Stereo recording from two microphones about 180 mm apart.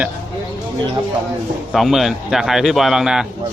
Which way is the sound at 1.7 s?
Centre (ahead or behind).